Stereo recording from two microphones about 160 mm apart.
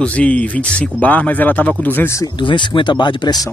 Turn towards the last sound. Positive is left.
turn(degrees=25)  # may be behind; listen again after turning